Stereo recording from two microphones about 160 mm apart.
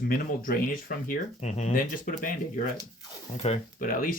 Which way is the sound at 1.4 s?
45° left (ahead or behind).